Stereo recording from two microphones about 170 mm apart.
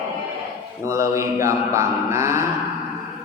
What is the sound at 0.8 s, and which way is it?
Speech, 15° right (ahead or behind).